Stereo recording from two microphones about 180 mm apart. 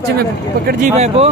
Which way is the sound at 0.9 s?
35° right (ahead or behind).